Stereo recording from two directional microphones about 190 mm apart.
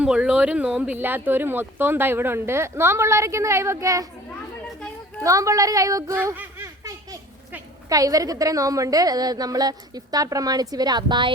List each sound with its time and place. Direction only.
0.0 s speech: 5° right (ahead or behind)
5.2 s speech: 15° right (ahead or behind)